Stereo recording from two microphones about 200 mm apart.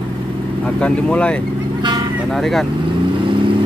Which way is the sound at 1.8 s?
20° right (ahead or behind).